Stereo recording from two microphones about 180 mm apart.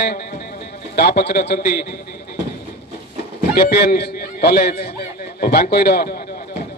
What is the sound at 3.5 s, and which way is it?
A man's voice, 60° left (ahead or behind).